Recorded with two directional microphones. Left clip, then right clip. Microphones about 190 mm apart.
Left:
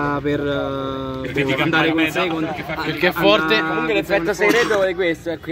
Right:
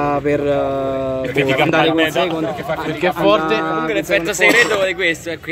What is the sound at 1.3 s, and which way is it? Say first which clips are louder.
Speech: right 3 dB; 50° right (ahead or behind).